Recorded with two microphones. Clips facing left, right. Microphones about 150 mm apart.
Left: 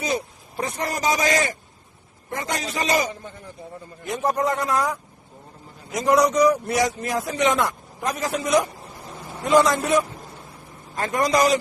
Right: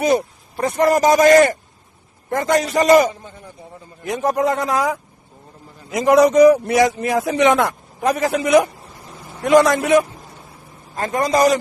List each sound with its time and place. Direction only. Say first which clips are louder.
0.6 s a man's voice: right 10 dB; 55° right (ahead or behind)
4.1 s a man's voice: right 4 dB; 85° right
6.1 s a man's voice: right 7 dB; 90° right; by 10.1 s 65° right (ahead or behind)
10.9 s a man's voice: right 3 dB; 30° right (ahead or behind)